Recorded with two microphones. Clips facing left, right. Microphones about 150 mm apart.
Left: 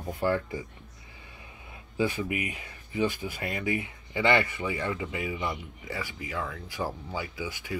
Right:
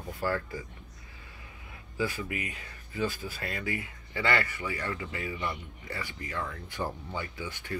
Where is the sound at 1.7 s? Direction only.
25° left (ahead or behind).